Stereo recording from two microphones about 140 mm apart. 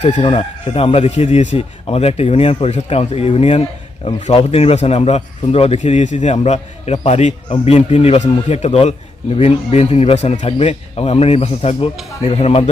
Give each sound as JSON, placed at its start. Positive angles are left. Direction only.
{"t": 0.2, "sound": "a man's voice", "side_deg": 45}